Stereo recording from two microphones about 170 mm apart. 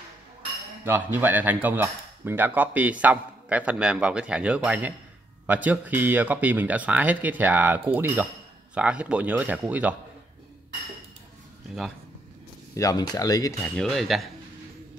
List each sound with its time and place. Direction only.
0.8 s speech: 10° right (ahead or behind)
12.7 s speech: 20° left (ahead or behind)
13.6 s speech: 5° left (ahead or behind)